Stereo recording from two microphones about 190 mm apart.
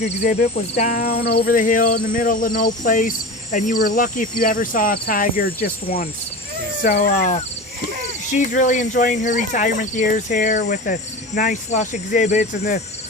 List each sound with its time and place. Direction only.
0.0 s speech: 40° left (ahead or behind)
0.8 s cricket: 45° left (ahead or behind)
6.8 s speech: 35° left (ahead or behind)
7.3 s goat: 40° left (ahead or behind)
8.3 s speech: 40° left (ahead or behind)
9.9 s cricket: 40° left (ahead or behind)